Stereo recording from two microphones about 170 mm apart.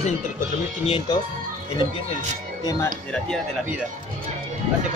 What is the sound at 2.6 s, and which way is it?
Speech, 20° left (ahead or behind).